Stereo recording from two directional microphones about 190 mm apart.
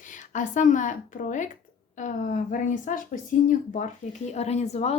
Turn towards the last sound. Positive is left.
turn(degrees=35)  # may be behind; listen again after turning